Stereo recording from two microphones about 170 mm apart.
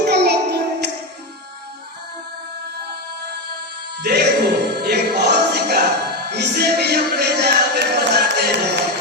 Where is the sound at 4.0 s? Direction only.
70° right (ahead or behind).